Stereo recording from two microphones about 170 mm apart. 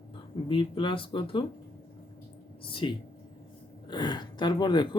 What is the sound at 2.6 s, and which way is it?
Speech, 30° left (ahead or behind).